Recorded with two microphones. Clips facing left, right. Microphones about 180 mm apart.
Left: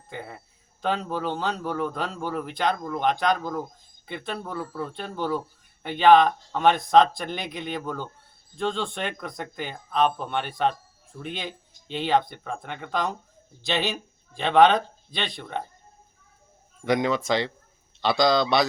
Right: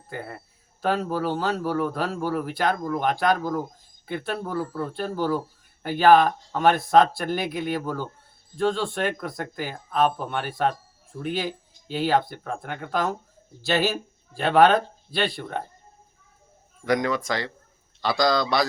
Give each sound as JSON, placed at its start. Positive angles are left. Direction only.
{"t": 0.1, "sound": "speech", "side_deg": -5}
{"t": 16.8, "sound": "speech", "side_deg": 25}